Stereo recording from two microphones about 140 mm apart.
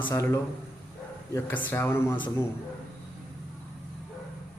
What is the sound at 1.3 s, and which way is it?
Speech, 15° left (ahead or behind).